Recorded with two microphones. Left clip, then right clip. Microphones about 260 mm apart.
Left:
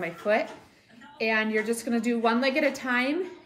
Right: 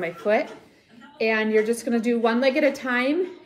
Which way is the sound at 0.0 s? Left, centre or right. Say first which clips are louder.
Right 3 dB; centre.